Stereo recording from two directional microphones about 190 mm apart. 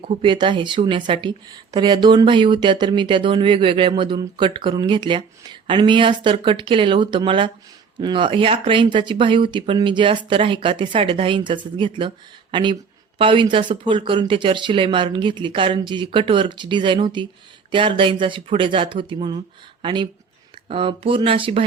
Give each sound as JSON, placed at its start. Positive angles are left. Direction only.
{"t": 0.1, "sound": "speech", "side_deg": -25}